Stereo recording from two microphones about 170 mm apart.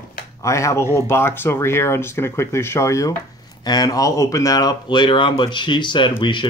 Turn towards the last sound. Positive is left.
turn(degrees=30)  # may be behind; listen again after turning